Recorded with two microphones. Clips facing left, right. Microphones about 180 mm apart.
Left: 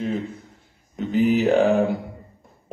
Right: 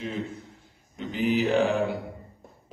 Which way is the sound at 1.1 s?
40° left (ahead or behind).